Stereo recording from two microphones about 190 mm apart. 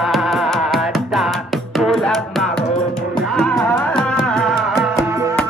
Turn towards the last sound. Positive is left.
turn(degrees=0)  # may be behind; listen again after turning